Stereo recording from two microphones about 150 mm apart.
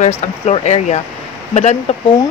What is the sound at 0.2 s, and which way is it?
Speech, 50° left (ahead or behind).